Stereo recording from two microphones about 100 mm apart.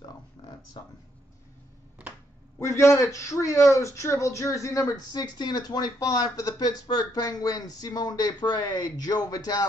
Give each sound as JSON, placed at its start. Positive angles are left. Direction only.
{"t": 0.8, "sound": "speech", "side_deg": 50}
{"t": 2.6, "sound": "a man's voice", "side_deg": 30}